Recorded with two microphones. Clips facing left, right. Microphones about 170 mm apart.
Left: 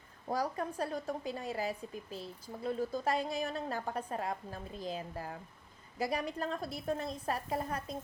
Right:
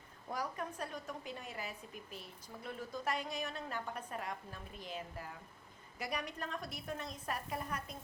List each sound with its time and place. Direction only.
0.3 s a woman's voice: 35° left (ahead or behind)